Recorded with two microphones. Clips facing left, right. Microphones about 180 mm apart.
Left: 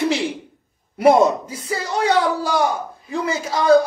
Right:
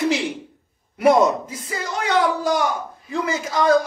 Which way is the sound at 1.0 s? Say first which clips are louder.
Left 2 dB; 30° left (ahead or behind).